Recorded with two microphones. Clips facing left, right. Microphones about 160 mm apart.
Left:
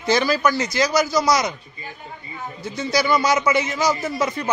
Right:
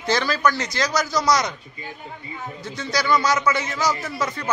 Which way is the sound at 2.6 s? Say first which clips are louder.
Left 5 dB; 5° left (ahead or behind).